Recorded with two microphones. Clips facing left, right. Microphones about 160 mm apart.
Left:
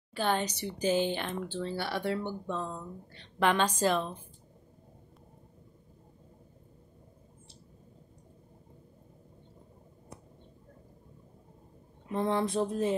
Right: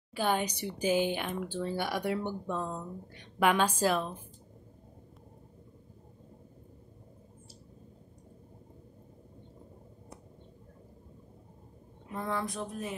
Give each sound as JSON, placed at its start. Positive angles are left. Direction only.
{"t": 0.1, "sound": "speech", "side_deg": -10}
{"t": 12.1, "sound": "speech", "side_deg": 25}